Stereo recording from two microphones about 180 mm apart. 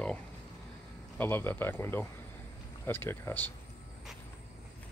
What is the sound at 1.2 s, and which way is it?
Speech, 10° left (ahead or behind).